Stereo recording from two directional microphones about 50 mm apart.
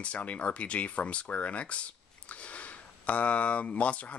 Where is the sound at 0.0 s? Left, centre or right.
Left.